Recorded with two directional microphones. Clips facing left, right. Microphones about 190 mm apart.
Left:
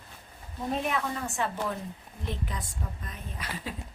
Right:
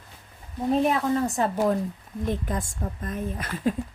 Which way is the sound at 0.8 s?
35° right (ahead or behind).